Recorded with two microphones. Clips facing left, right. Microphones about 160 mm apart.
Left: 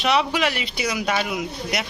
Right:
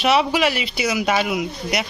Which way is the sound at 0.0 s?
5° right (ahead or behind).